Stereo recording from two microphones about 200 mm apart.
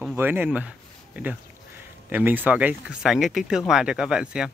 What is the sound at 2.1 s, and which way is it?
Speech, 10° right (ahead or behind).